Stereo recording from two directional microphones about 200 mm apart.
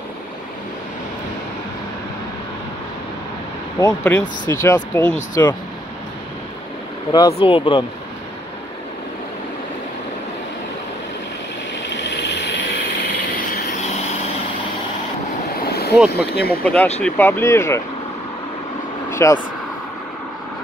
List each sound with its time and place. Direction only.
3.8 s speech: 5° left (ahead or behind)
7.1 s speech: 20° left (ahead or behind)
11.9 s vehicle: 60° left (ahead or behind)
13.8 s vehicle: 30° left (ahead or behind)
15.7 s vehicle: 50° left (ahead or behind)
16.1 s speech: 50° left (ahead or behind)
16.6 s speech: 5° left (ahead or behind)
19.0 s vehicle: 15° left (ahead or behind)